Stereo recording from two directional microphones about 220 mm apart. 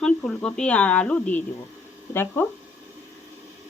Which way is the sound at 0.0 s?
5° left (ahead or behind).